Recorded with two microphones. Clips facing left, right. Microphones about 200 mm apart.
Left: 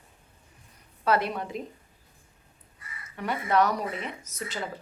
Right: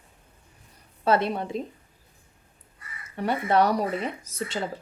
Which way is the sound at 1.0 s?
25° right (ahead or behind).